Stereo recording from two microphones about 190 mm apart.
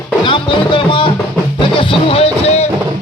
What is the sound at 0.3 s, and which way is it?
Music, 25° left (ahead or behind).